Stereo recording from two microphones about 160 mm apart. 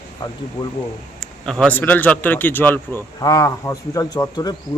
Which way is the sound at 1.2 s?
5° left (ahead or behind).